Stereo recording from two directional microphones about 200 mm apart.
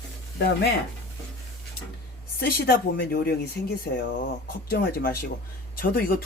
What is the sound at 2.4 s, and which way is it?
Speech, 50° left (ahead or behind).